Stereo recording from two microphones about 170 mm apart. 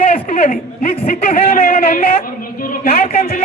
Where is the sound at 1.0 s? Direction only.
60° left (ahead or behind).